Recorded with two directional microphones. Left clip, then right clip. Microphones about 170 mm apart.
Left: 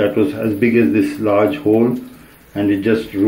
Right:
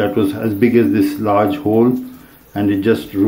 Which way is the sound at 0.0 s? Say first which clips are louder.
Left 1 dB; 35° right (ahead or behind).